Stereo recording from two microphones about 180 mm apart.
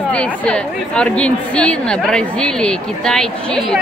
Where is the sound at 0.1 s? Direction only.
5° left (ahead or behind).